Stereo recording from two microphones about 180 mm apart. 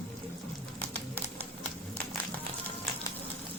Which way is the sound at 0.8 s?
10° left (ahead or behind).